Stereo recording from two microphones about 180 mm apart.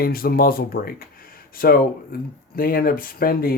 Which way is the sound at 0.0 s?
55° left (ahead or behind).